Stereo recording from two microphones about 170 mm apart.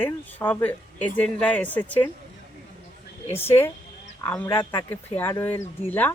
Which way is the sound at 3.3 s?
15° left (ahead or behind).